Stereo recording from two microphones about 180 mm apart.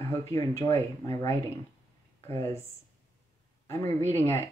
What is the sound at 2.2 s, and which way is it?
Speech, 15° left (ahead or behind).